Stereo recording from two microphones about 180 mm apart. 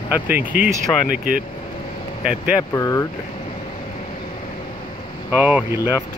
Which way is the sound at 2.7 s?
20° left (ahead or behind).